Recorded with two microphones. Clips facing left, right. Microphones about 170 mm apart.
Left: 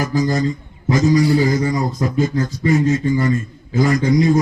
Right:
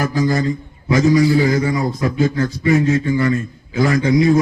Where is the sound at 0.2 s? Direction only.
60° right (ahead or behind).